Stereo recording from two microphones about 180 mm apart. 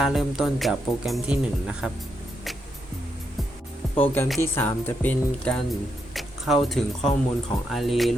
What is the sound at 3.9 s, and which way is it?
Speech, 10° left (ahead or behind).